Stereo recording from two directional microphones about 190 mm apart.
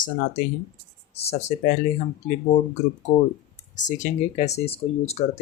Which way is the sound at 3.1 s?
35° left (ahead or behind).